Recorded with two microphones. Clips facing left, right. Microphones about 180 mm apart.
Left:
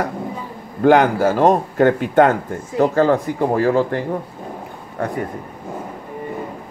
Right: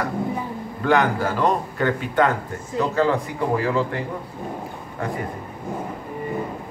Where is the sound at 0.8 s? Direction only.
45° left (ahead or behind).